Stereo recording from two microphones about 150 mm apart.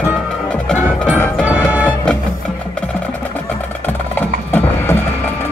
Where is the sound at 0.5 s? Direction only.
10° left (ahead or behind).